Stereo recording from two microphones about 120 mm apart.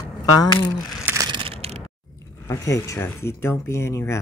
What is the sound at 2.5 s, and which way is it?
A man's voice, 25° left (ahead or behind).